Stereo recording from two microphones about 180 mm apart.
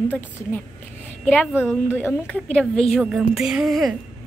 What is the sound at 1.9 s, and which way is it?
A child's voice, 10° left (ahead or behind).